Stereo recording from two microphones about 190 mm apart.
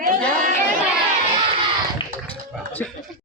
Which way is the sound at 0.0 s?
45° right (ahead or behind).